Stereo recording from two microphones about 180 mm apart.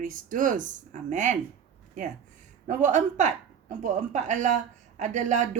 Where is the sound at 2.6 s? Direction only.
40° right (ahead or behind).